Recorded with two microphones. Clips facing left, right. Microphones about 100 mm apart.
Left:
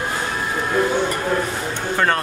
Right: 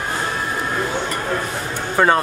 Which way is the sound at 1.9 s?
10° right (ahead or behind).